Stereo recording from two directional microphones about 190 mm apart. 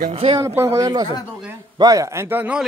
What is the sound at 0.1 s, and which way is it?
Speech, 30° right (ahead or behind).